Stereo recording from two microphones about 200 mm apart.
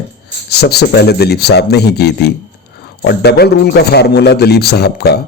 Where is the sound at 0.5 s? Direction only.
55° left (ahead or behind).